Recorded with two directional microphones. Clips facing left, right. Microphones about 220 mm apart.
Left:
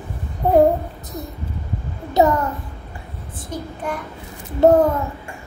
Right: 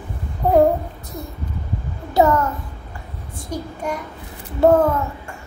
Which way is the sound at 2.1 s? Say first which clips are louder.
Even; 20° left (ahead or behind).